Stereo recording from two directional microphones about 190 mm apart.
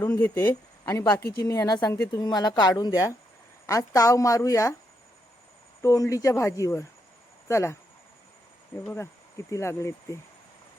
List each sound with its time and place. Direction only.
0.0 s speech: 10° left (ahead or behind)
5.8 s speech: 15° left (ahead or behind)
8.8 s speech: 10° left (ahead or behind)